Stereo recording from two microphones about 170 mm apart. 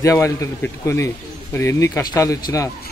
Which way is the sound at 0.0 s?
15° left (ahead or behind).